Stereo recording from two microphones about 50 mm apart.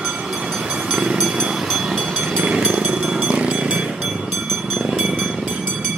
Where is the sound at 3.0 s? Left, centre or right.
Centre.